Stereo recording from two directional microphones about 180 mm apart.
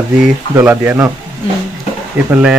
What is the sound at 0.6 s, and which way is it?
Speech, 10° right (ahead or behind).